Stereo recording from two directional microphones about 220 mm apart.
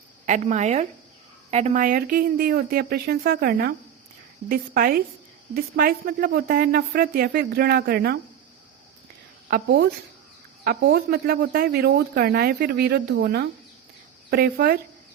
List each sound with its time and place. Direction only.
0.3 s a woman's voice: 35° right (ahead or behind)
9.5 s speech: 45° right (ahead or behind)